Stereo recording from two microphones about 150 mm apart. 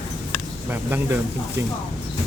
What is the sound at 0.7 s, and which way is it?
Speech, 15° right (ahead or behind).